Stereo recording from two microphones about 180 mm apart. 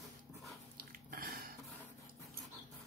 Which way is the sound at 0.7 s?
50° right (ahead or behind).